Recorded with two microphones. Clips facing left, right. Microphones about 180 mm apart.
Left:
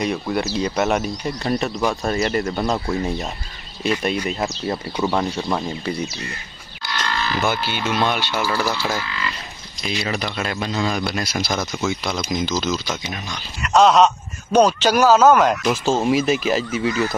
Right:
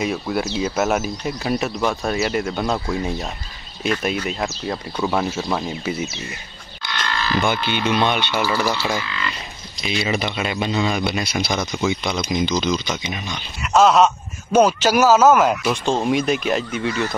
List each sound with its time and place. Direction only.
0.0 s speech: centre (ahead or behind)
7.4 s speech: 5° left (ahead or behind)